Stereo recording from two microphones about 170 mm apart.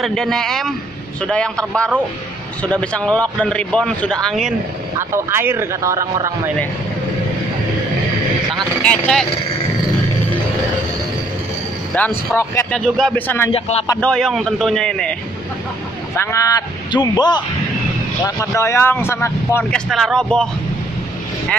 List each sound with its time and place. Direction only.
0.0 s a man's voice: 5° left (ahead or behind)
4.9 s speech: 15° right (ahead or behind)
8.8 s a man's voice: 5° left (ahead or behind)
11.9 s a man's voice: 10° left (ahead or behind)
12.8 s a man's voice: centre (ahead or behind)
13.1 s a man's voice: 10° left (ahead or behind)
13.5 s speech: 35° left (ahead or behind)
14.0 s a man's voice: centre (ahead or behind)
16.2 s speech: 15° left (ahead or behind)
18.2 s a man's voice: 15° left (ahead or behind)
19.9 s a man's voice: centre (ahead or behind)